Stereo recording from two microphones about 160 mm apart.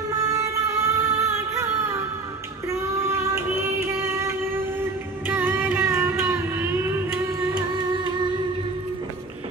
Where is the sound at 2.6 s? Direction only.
15° right (ahead or behind).